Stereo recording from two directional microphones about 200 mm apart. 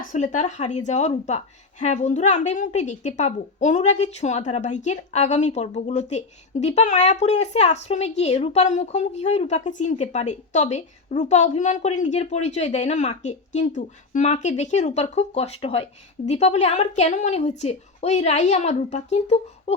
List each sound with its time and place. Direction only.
0.1 s a woman's voice: 40° left (ahead or behind)